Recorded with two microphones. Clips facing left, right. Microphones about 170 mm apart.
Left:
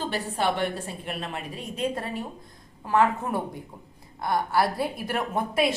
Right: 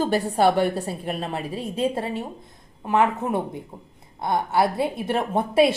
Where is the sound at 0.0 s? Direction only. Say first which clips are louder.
Right 8 dB; 40° right (ahead or behind).